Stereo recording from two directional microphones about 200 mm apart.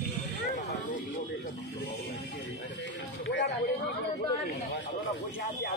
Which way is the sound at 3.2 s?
60° left (ahead or behind).